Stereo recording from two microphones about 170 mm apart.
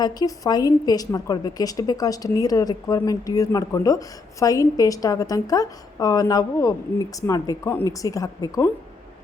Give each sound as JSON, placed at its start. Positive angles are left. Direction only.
{"t": 0.0, "sound": "a woman's voice", "side_deg": 25}